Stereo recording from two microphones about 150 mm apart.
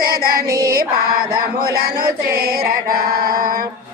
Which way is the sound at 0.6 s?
80° right.